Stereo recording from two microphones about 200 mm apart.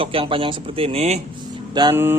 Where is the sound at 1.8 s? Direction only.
15° right (ahead or behind).